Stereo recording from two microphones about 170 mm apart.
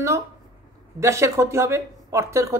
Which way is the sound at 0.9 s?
15° right (ahead or behind).